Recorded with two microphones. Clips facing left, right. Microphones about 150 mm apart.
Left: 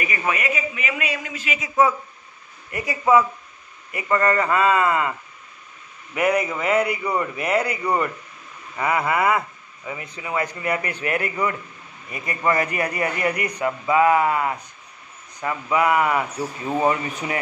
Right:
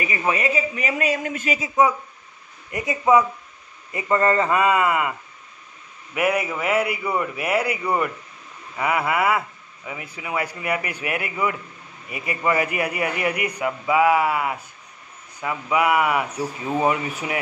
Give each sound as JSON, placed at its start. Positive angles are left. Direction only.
{"t": 0.3, "sound": "a man's voice", "side_deg": -30}
{"t": 2.7, "sound": "a woman's voice", "side_deg": -20}
{"t": 6.1, "sound": "speech", "side_deg": -5}